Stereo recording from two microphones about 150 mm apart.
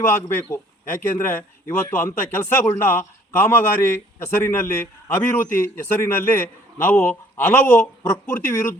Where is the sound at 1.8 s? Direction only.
15° left (ahead or behind).